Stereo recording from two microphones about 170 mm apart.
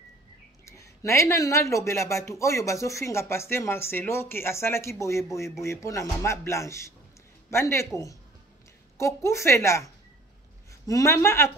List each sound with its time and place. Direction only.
0.7 s speech: 15° left (ahead or behind)